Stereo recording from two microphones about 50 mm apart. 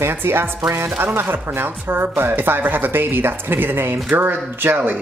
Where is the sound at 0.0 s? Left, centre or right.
Right.